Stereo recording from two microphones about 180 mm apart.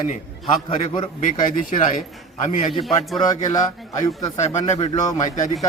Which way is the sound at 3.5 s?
20° left (ahead or behind).